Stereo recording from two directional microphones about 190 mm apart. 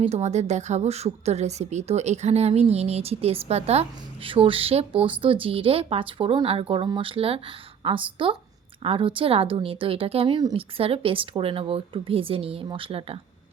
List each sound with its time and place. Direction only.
0.0 s a woman's voice: 35° right (ahead or behind)